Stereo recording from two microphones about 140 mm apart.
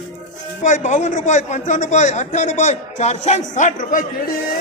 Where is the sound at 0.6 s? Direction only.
65° left (ahead or behind).